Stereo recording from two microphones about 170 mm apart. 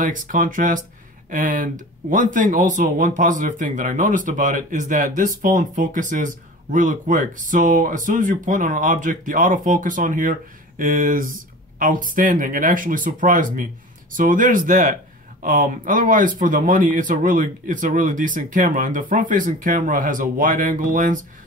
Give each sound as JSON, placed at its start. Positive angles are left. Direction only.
{"t": 0.0, "sound": "speech", "side_deg": -50}